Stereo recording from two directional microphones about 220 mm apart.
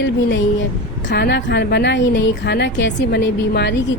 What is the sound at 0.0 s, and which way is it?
A woman's voice, 55° left (ahead or behind).